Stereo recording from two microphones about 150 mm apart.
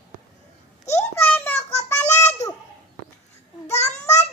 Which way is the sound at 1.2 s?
10° left (ahead or behind).